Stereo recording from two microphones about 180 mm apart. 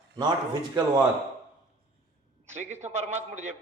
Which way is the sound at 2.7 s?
40° right (ahead or behind).